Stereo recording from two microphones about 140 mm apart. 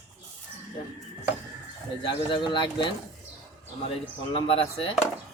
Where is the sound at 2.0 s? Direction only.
35° left (ahead or behind).